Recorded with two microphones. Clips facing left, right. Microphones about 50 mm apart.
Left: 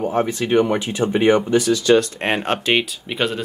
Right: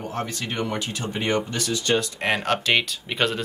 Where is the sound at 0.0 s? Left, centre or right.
Centre.